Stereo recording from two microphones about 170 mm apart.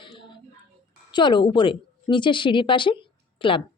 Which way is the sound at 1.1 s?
25° left (ahead or behind).